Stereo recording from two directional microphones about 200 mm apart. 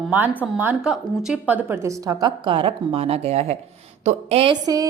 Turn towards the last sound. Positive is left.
turn(degrees=-20)  # may be behind; listen again after turning